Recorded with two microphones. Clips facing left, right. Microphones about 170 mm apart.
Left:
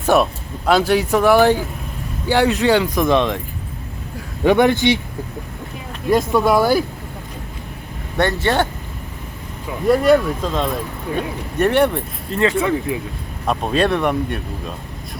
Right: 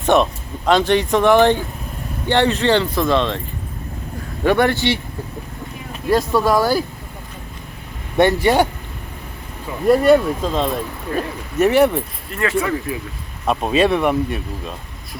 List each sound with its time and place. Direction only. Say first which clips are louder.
0.0 s speech: even; 5° left (ahead or behind)
4.4 s speech: left 2 dB; 15° left (ahead or behind)
6.4 s speech: left 1 dB; 15° left (ahead or behind)
8.2 s speech: right 4 dB; 15° right (ahead or behind)
9.9 s speech: right 1 dB; centre (ahead or behind)
12.3 s speech: left 3 dB; 25° left (ahead or behind)
13.5 s speech: right 2 dB; 5° right (ahead or behind)